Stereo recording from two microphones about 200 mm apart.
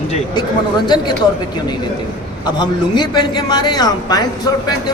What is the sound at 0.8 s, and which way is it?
Speech, 20° left (ahead or behind).